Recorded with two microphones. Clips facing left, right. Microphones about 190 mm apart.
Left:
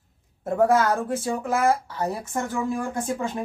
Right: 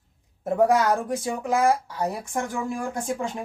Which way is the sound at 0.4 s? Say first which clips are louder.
Even; 15° right (ahead or behind).